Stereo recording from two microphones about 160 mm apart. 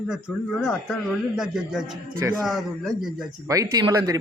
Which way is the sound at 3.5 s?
20° right (ahead or behind).